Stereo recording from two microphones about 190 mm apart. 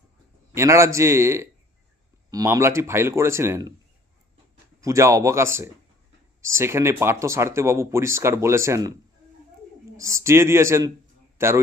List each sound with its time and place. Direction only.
0.5 s speech: 15° right (ahead or behind)
4.8 s speech: 15° right (ahead or behind)
10.0 s a man's voice: 15° right (ahead or behind)